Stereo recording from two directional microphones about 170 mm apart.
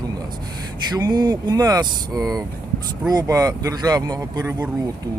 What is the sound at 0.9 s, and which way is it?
Speech, 25° right (ahead or behind).